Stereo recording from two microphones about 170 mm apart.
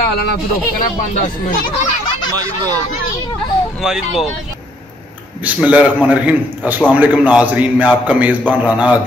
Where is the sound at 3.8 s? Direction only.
5° right (ahead or behind).